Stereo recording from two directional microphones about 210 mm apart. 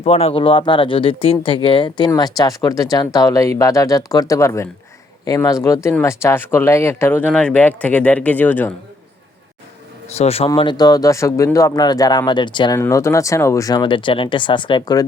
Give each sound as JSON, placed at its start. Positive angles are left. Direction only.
{"t": 0.0, "sound": "speech", "side_deg": 30}
{"t": 10.2, "sound": "speech", "side_deg": 30}